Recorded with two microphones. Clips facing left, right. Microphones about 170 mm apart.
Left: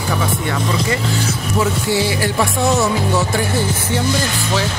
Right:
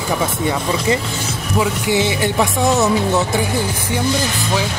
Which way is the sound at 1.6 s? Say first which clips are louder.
Right 1 dB; 20° right (ahead or behind).